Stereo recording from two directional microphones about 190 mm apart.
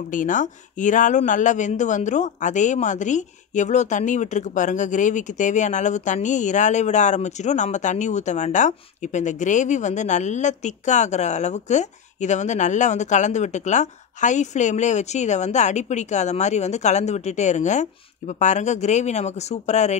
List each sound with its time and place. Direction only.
0.1 s speech: 45° left (ahead or behind)